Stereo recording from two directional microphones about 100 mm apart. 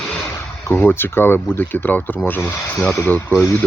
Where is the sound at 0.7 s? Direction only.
20° left (ahead or behind).